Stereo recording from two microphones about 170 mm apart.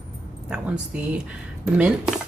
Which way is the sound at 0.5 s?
10° right (ahead or behind).